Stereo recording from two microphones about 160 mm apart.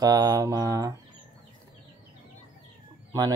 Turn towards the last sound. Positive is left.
turn(degrees=-25)  # may be behind; listen again after turning